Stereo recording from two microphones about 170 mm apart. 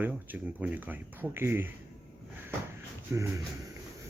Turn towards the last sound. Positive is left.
turn(degrees=-20)  # may be behind; listen again after turning